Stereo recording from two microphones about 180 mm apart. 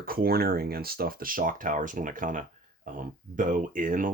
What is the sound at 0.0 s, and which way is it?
Speech, 55° right (ahead or behind).